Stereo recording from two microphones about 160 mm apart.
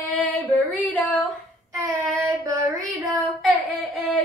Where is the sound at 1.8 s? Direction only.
20° right (ahead or behind).